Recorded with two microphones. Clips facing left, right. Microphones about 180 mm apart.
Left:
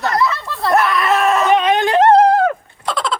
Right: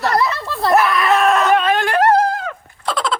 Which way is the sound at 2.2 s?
60° left (ahead or behind).